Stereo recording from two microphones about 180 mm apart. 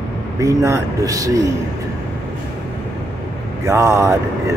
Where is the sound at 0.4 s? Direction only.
15° right (ahead or behind).